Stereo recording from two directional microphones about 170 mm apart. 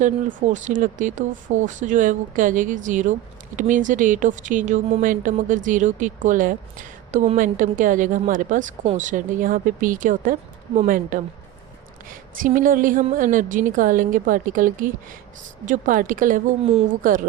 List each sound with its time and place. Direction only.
0.0 s speech: 50° right (ahead or behind)
12.4 s speech: 50° right (ahead or behind)